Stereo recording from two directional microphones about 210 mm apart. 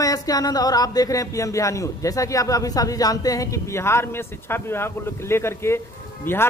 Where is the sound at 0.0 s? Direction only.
15° left (ahead or behind).